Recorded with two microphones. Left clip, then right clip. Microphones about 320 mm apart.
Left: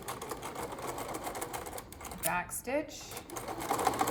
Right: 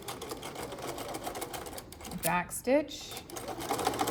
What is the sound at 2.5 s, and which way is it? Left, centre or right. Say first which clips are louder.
Speech: right 6 dB; centre.